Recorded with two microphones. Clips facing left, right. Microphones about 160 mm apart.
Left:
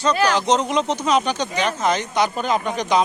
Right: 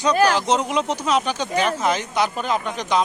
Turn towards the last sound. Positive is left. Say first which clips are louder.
# left 2 dB
turn(degrees=0)  # may be behind; listen again after turning